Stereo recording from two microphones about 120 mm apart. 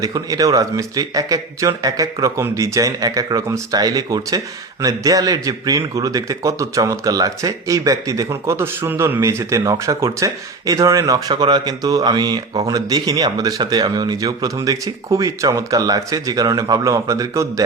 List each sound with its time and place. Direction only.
0.0 s a man's voice: 30° right (ahead or behind)